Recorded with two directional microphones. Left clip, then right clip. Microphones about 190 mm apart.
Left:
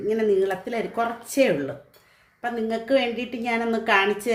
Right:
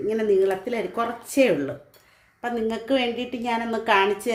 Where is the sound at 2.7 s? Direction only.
15° right (ahead or behind).